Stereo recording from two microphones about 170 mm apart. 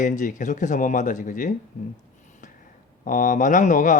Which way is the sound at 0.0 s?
50° left (ahead or behind).